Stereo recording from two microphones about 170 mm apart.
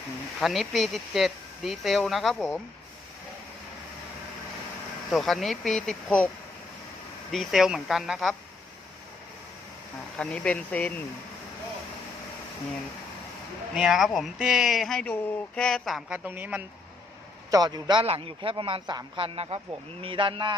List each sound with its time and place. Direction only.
0.3 s speech: centre (ahead or behind)
5.1 s speech: centre (ahead or behind)
7.3 s speech: centre (ahead or behind)
10.2 s speech: 5° left (ahead or behind)
13.7 s speech: 5° right (ahead or behind)
17.5 s a man's voice: 25° right (ahead or behind)